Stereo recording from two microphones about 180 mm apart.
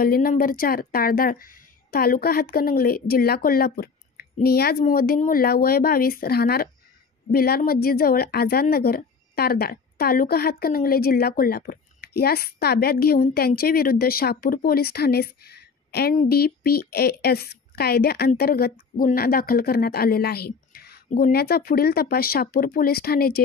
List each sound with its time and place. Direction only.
0.0 s a woman's voice: 55° left (ahead or behind)